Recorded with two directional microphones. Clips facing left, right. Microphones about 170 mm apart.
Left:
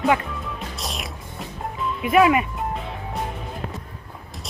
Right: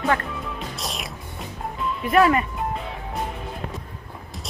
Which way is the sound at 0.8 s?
Centre (ahead or behind).